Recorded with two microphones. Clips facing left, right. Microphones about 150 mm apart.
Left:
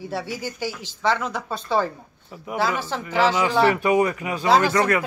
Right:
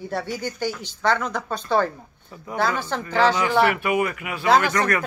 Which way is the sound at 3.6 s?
25° left (ahead or behind).